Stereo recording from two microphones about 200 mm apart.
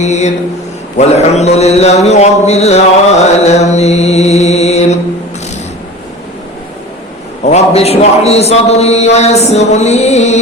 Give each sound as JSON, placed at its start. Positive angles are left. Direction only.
{"t": 0.0, "sound": "a man's voice", "side_deg": 35}
{"t": 3.2, "sound": "mantra", "side_deg": 35}
{"t": 7.4, "sound": "a man's voice", "side_deg": 30}